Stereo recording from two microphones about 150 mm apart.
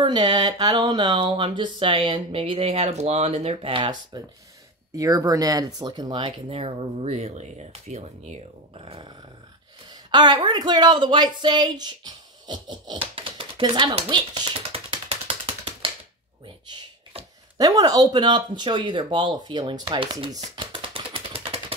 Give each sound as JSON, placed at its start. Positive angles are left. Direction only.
{"t": 0.0, "sound": "speech", "side_deg": -30}
{"t": 9.8, "sound": "a sound", "side_deg": -30}
{"t": 16.6, "sound": "speech", "side_deg": -30}